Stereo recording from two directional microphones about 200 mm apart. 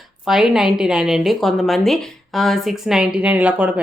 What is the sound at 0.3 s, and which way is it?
A woman's voice, 5° right (ahead or behind).